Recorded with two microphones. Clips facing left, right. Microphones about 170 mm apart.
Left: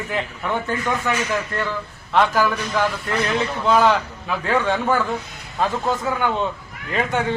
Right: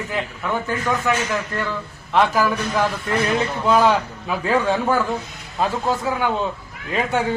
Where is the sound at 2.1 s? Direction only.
5° right (ahead or behind).